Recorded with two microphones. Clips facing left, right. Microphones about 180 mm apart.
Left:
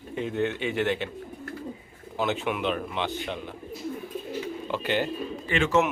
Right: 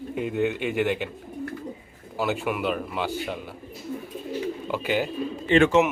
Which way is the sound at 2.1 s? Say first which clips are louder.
Right 1 dB; 5° right (ahead or behind).